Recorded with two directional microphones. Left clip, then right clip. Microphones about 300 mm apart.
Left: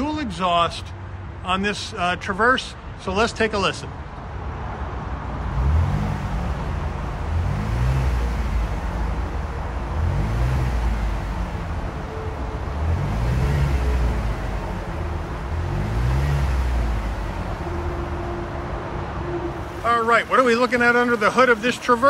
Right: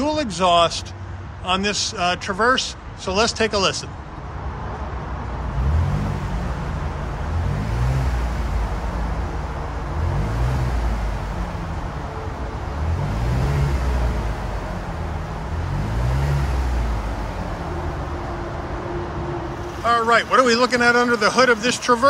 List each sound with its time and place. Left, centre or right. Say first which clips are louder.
0.0 s a man's voice: right 4 dB; centre
19.9 s a man's voice: right 1 dB; centre